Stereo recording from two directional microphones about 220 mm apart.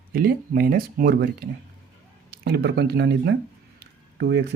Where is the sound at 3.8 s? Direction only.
50° right (ahead or behind).